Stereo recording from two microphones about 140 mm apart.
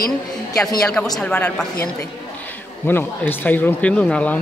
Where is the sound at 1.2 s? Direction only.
10° left (ahead or behind).